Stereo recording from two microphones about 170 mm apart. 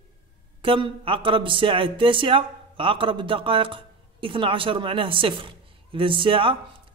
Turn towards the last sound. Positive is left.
turn(degrees=-30)  # may be behind; listen again after turning